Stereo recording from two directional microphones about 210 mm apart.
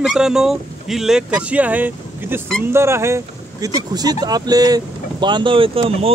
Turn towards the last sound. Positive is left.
turn(degrees=-25)  # may be behind; listen again after turning